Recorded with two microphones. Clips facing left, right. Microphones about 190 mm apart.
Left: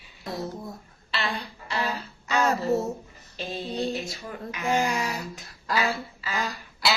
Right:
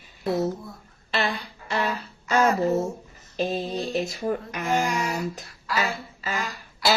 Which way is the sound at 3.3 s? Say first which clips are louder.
Right 8 dB; 40° right (ahead or behind).